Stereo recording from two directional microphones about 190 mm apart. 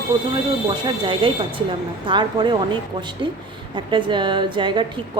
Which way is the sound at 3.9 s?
25° right (ahead or behind).